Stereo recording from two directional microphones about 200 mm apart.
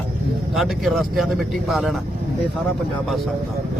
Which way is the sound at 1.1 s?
Centre (ahead or behind).